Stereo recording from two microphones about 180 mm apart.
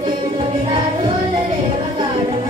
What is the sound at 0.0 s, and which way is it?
Music, 30° right (ahead or behind).